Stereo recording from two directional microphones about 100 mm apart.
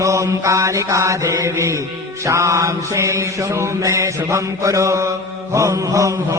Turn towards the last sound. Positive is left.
turn(degrees=-35)  # may be behind; listen again after turning